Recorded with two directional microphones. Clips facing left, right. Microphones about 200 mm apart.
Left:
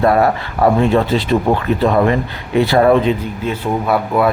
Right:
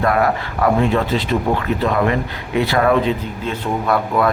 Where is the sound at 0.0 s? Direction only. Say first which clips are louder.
Left 4 dB; 30° left (ahead or behind).